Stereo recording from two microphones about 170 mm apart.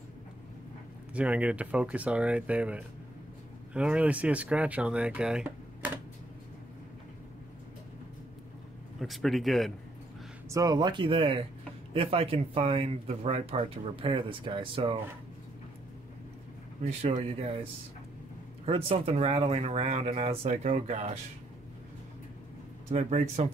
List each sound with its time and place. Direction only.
1.1 s speech: 5° right (ahead or behind)
9.0 s speech: centre (ahead or behind)
10.5 s speech: 20° right (ahead or behind)
16.8 s speech: 40° right (ahead or behind)
18.7 s speech: 35° right (ahead or behind)
22.8 s speech: 40° right (ahead or behind)